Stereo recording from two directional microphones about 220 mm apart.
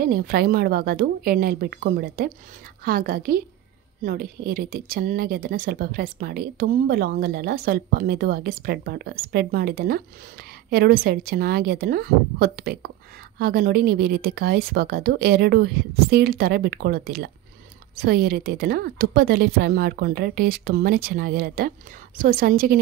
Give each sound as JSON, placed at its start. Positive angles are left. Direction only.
{"t": 0.0, "sound": "a woman's voice", "side_deg": -45}